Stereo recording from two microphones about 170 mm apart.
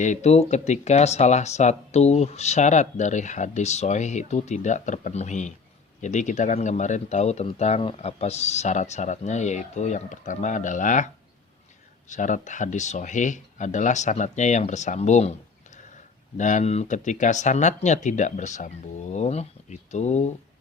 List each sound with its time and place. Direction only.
0.0 s speech: 45° left (ahead or behind)
16.4 s speech: 45° left (ahead or behind)